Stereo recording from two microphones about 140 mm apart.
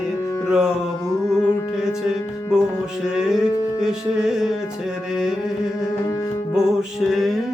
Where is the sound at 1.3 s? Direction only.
15° left (ahead or behind).